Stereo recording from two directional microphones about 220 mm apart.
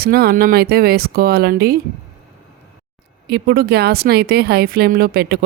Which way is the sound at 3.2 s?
45° right (ahead or behind).